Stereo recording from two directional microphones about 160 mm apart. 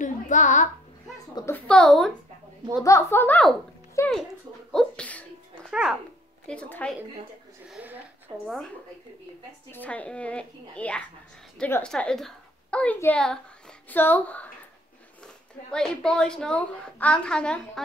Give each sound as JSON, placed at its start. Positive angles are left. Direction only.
{"t": 0.0, "sound": "a sound", "side_deg": 50}
{"t": 1.3, "sound": "a child's voice", "side_deg": 15}
{"t": 1.7, "sound": "a woman's voice", "side_deg": 5}
{"t": 2.8, "sound": "a woman's voice", "side_deg": 15}
{"t": 4.7, "sound": "sneeze", "side_deg": 5}
{"t": 5.7, "sound": "speech", "side_deg": -5}
{"t": 6.4, "sound": "a woman's voice", "side_deg": 5}
{"t": 7.7, "sound": "a woman's voice", "side_deg": -10}
{"t": 8.5, "sound": "a woman's voice", "side_deg": 0}
{"t": 15.7, "sound": "a woman's voice", "side_deg": 5}